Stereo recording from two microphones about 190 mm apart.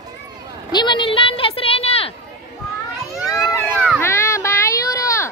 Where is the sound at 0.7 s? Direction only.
25° left (ahead or behind).